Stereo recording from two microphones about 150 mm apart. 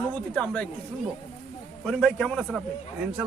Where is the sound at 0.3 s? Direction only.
10° left (ahead or behind).